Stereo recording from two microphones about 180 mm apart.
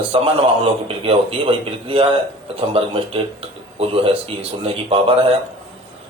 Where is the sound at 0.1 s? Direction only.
30° right (ahead or behind).